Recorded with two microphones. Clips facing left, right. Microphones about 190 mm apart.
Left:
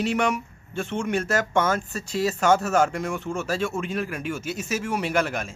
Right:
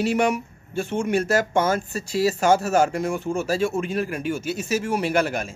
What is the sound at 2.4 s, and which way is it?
Speech, 35° right (ahead or behind).